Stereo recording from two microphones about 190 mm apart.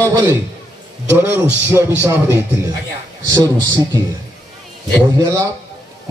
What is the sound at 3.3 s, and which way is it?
Speech, 20° right (ahead or behind).